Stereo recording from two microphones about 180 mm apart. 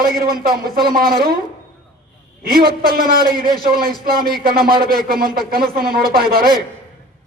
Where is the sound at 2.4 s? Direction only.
55° right (ahead or behind).